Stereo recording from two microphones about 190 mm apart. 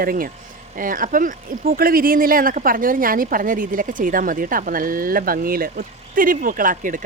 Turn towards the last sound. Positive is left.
turn(degrees=-45)  # may be behind; listen again after turning